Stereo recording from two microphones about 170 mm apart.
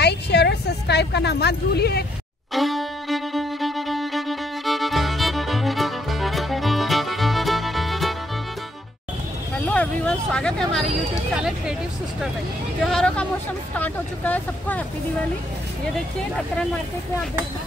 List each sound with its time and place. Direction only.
0.0 s speech: 80° left
2.5 s music: centre (ahead or behind)
9.7 s a sound: 5° left (ahead or behind)
11.3 s speech: 5° right (ahead or behind)
12.8 s speech: 5° left (ahead or behind)